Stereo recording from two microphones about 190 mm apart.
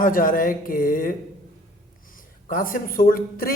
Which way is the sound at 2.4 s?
45° left (ahead or behind).